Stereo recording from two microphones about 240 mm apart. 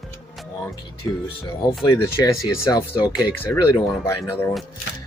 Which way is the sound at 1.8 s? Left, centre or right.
Centre.